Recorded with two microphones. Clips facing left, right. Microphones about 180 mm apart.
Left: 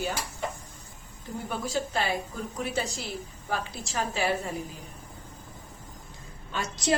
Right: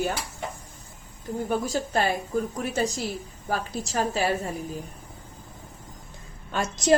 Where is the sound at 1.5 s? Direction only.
45° right (ahead or behind).